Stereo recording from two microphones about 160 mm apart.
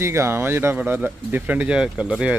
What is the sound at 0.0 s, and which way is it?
Speech, 15° right (ahead or behind).